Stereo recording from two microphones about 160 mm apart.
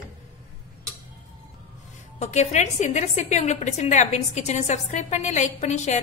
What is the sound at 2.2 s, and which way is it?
A woman's voice, 45° left (ahead or behind).